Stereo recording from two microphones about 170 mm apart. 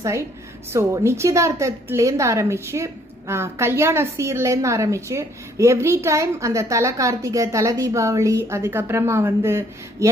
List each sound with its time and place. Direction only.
0.0 s a woman's voice: 15° right (ahead or behind)